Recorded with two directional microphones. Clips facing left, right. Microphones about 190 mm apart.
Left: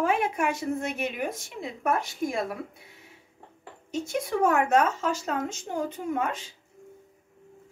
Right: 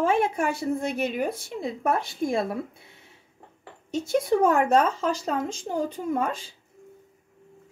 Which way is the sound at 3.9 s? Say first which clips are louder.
Right 6 dB; 30° right (ahead or behind).